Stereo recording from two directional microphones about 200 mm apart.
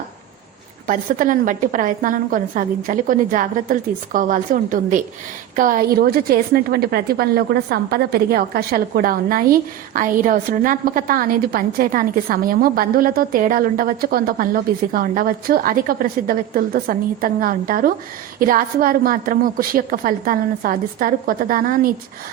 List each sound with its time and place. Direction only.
0.9 s a woman's voice: 40° right (ahead or behind)